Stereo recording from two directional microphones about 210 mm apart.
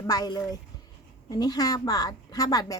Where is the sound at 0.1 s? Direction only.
20° left (ahead or behind).